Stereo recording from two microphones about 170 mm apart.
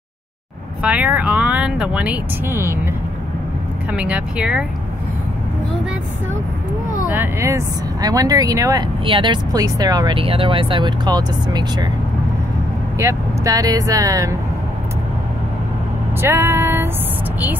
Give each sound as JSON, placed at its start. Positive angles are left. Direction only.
{"t": 0.8, "sound": "speech", "side_deg": -10}
{"t": 3.9, "sound": "speech", "side_deg": -5}
{"t": 7.1, "sound": "speech", "side_deg": -15}
{"t": 13.0, "sound": "speech", "side_deg": -20}
{"t": 16.2, "sound": "speech", "side_deg": -15}